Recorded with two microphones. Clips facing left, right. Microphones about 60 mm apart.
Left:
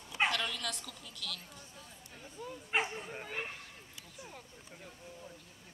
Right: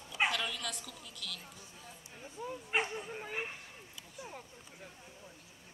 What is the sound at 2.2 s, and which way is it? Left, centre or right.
Bow-wow, centre.